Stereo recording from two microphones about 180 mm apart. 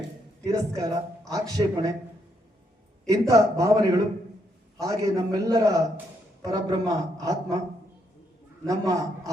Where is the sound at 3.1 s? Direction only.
20° right (ahead or behind).